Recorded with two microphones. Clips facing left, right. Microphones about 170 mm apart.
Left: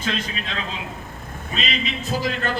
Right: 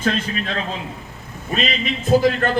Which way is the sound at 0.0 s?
45° right (ahead or behind).